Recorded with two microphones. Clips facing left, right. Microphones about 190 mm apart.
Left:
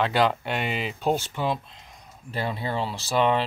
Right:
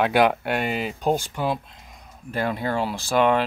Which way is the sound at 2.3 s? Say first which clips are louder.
Right 4 dB; 45° right (ahead or behind).